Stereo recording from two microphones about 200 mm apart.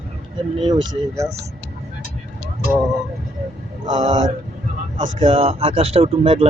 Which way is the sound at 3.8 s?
20° right (ahead or behind).